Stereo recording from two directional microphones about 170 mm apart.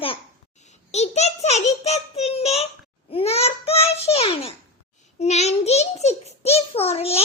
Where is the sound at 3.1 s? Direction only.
35° left (ahead or behind).